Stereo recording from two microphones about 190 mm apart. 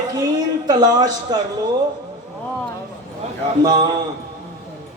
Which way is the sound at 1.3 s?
20° right (ahead or behind).